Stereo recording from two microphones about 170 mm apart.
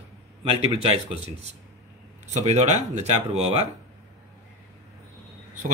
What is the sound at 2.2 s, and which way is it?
Speech, 40° right (ahead or behind).